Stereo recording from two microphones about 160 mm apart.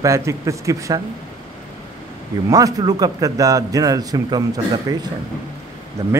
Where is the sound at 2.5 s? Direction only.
25° right (ahead or behind).